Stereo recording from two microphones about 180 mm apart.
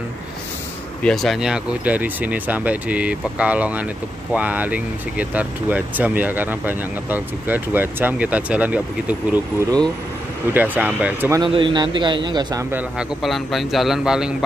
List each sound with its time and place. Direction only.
1.0 s speech: centre (ahead or behind)
9.3 s speech: 20° right (ahead or behind)
11.4 s a man's voice: 25° right (ahead or behind)
12.7 s a man's voice: centre (ahead or behind)